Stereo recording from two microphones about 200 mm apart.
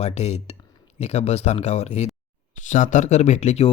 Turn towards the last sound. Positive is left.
turn(degrees=35)  # may be behind; listen again after turning